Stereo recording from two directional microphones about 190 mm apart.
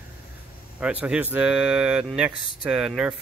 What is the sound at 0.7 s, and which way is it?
Speech, 5° right (ahead or behind).